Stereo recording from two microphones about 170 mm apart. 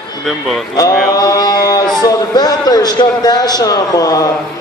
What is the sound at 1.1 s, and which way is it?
A man's voice, 20° left (ahead or behind).